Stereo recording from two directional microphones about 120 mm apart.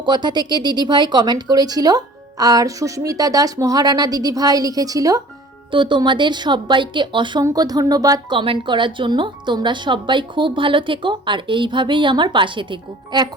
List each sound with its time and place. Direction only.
0.0 s a woman's voice: 35° right (ahead or behind)
5.7 s a woman's voice: 40° right (ahead or behind)
8.4 s a woman's voice: 45° right (ahead or behind)